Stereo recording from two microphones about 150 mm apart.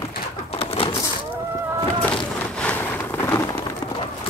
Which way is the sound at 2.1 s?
5° left (ahead or behind).